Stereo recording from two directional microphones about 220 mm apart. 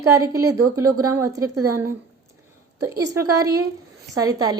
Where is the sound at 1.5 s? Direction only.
90° right.